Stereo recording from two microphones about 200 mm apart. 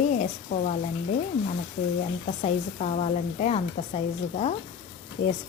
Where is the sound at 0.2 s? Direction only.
35° left (ahead or behind).